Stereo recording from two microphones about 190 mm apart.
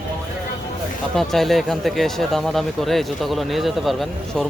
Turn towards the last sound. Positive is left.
turn(degrees=0)  # may be behind; listen again after turning